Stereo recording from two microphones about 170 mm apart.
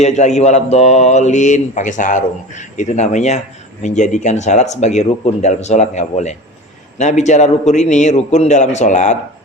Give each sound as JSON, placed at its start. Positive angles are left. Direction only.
{"t": 0.0, "sound": "mantra", "side_deg": 40}